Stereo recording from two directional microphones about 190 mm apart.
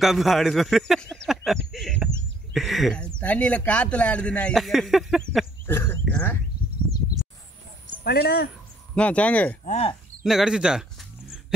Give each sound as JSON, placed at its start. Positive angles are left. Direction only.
{"t": 0.0, "sound": "a man's voice", "side_deg": 0}
{"t": 5.7, "sound": "a sound", "side_deg": 10}
{"t": 8.0, "sound": "speech", "side_deg": 55}
{"t": 8.9, "sound": "speech", "side_deg": 5}
{"t": 9.7, "sound": "speech", "side_deg": 30}
{"t": 10.2, "sound": "a sound", "side_deg": -5}